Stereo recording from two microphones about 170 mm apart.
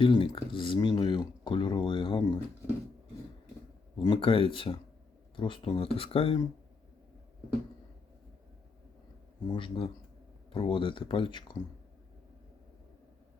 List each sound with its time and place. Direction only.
0.0 s speech: 30° left (ahead or behind)
3.9 s speech: 30° left (ahead or behind)
9.5 s speech: 30° left (ahead or behind)